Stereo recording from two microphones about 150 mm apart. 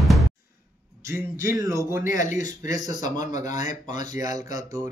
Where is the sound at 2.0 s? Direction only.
60° left (ahead or behind).